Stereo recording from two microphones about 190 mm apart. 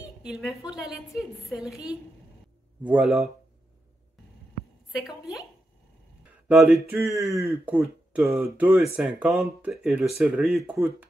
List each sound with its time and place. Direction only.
0.2 s speech: 5° right (ahead or behind)
2.8 s speech: 5° right (ahead or behind)
4.9 s speech: centre (ahead or behind)
6.5 s speech: centre (ahead or behind)